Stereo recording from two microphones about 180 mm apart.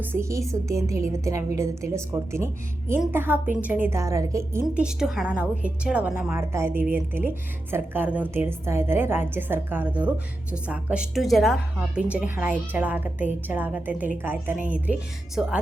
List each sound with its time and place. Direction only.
0.0 s a woman's voice: 15° right (ahead or behind)
4.6 s a woman's voice: 5° right (ahead or behind)